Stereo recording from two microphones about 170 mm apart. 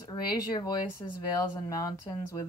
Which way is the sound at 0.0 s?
25° left (ahead or behind).